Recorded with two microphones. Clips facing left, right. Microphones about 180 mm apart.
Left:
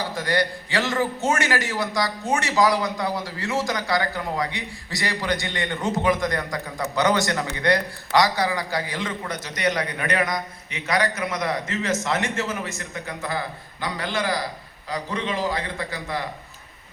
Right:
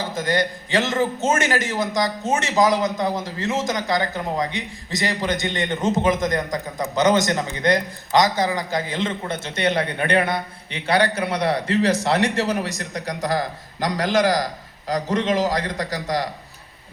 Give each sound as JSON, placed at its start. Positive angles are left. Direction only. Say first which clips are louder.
{"t": 0.0, "sound": "a man's voice", "louder": "right 2 dB", "side_deg": -20}